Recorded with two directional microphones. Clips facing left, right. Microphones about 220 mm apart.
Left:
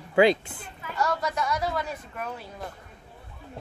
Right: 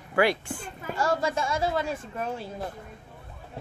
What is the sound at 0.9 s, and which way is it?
A woman's voice, 30° right (ahead or behind).